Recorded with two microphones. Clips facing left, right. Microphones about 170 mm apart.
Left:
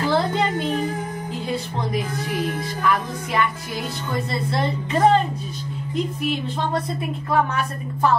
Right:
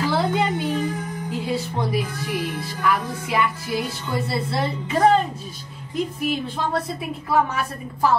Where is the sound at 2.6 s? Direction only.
5° right (ahead or behind).